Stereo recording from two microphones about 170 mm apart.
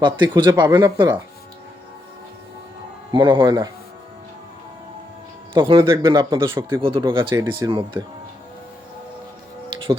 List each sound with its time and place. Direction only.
0.0 s speech: 25° right (ahead or behind)
3.1 s speech: 30° right (ahead or behind)
5.5 s speech: 25° right (ahead or behind)
6.5 s speech: 15° right (ahead or behind)
6.8 s speech: 30° right (ahead or behind)
9.7 s music: 30° right (ahead or behind)